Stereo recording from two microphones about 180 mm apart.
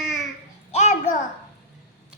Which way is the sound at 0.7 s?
40° left (ahead or behind).